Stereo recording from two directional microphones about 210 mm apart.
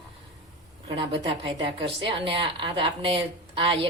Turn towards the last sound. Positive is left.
turn(degrees=-25)  # may be behind; listen again after turning